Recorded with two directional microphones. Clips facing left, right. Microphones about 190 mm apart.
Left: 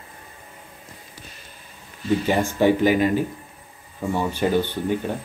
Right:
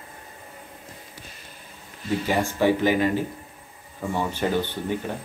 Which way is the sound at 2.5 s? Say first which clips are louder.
Left 3 dB; 15° left (ahead or behind).